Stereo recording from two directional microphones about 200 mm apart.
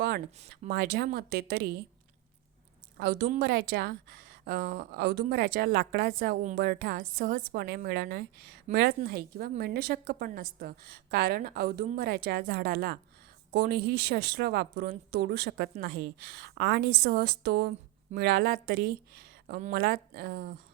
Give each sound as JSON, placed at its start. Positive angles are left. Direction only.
{"t": 0.7, "sound": "a woman's voice", "side_deg": -50}
{"t": 3.0, "sound": "a woman's voice", "side_deg": -55}